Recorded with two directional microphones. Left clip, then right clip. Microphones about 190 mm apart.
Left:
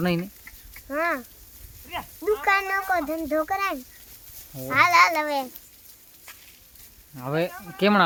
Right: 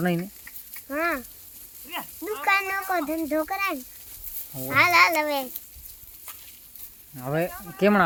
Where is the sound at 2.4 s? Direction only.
10° left (ahead or behind).